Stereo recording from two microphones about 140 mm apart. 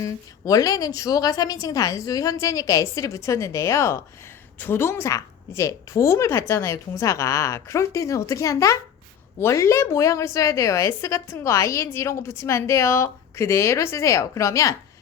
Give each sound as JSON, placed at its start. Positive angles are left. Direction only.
{"t": 0.0, "sound": "a woman's voice", "side_deg": 25}